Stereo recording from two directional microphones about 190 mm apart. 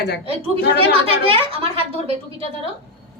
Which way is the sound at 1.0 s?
30° right (ahead or behind).